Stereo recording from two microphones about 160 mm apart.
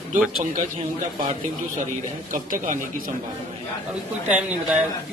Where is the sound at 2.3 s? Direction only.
55° right (ahead or behind).